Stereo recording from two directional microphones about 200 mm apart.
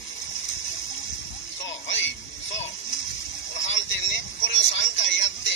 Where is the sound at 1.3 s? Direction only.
75° left (ahead or behind).